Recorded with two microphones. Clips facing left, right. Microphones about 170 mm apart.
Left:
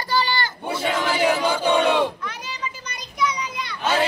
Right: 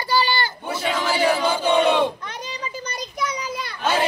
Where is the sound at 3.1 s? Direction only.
45° right (ahead or behind).